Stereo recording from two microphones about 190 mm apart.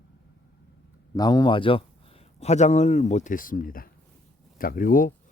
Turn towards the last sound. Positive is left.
turn(degrees=45)  # may be behind; listen again after turning